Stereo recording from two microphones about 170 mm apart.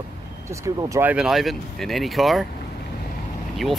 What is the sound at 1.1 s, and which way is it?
Speech, centre (ahead or behind).